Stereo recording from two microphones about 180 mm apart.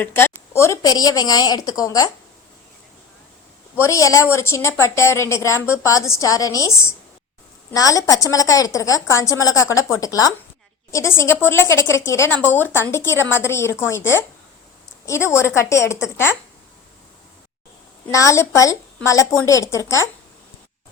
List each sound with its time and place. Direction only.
0.0 s a woman's voice: 15° left (ahead or behind)
3.8 s a woman's voice: 15° left (ahead or behind)
18.1 s a woman's voice: 20° left (ahead or behind)